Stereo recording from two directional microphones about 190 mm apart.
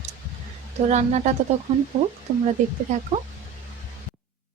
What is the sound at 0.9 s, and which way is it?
Speech, 40° right (ahead or behind).